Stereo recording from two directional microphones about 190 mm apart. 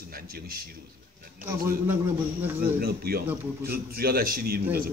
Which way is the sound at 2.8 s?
55° right (ahead or behind).